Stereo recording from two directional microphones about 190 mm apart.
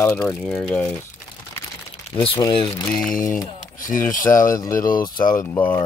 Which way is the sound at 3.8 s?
45° left (ahead or behind).